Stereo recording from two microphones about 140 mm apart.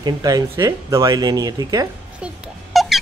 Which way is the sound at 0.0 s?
25° right (ahead or behind).